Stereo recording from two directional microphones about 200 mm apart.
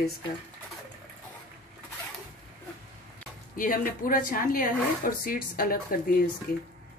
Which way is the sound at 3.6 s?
45° left (ahead or behind).